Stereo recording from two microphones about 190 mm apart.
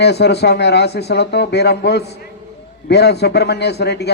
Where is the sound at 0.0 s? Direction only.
60° left (ahead or behind).